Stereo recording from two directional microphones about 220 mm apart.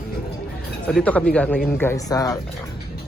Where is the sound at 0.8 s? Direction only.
5° left (ahead or behind).